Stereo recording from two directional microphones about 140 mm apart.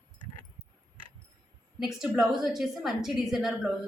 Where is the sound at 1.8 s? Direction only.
Centre (ahead or behind).